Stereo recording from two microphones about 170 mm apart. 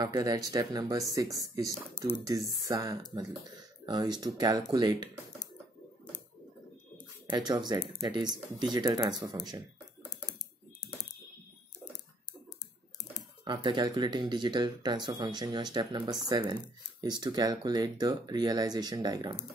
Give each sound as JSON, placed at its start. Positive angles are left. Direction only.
{"t": 0.0, "sound": "speech", "side_deg": -20}
{"t": 7.2, "sound": "speech", "side_deg": -25}
{"t": 13.4, "sound": "speech", "side_deg": -25}